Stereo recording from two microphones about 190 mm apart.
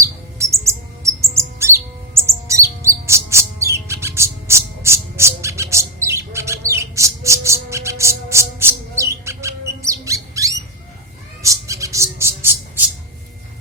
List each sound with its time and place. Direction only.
0.0 s bird: 15° right (ahead or behind)